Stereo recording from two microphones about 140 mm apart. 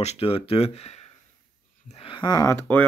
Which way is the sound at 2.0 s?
35° left (ahead or behind).